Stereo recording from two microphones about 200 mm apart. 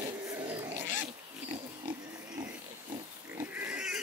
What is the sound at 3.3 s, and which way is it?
Pig, 5° right (ahead or behind).